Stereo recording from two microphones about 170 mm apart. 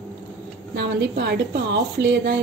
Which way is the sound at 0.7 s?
70° right (ahead or behind).